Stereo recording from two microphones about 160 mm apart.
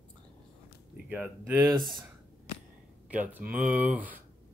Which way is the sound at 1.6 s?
Centre (ahead or behind).